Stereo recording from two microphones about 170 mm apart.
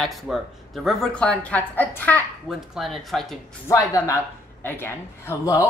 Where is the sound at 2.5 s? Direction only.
Centre (ahead or behind).